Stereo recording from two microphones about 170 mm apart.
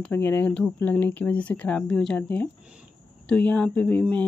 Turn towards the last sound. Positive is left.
turn(degrees=10)  # may be behind; listen again after turning